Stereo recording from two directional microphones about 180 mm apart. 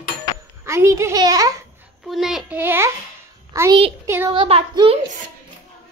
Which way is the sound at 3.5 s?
15° right (ahead or behind).